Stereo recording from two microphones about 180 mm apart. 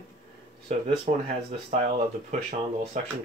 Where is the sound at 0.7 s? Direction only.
35° right (ahead or behind).